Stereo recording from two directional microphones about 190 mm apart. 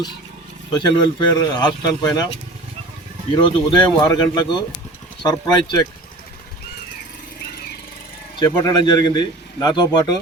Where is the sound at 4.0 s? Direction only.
20° left (ahead or behind).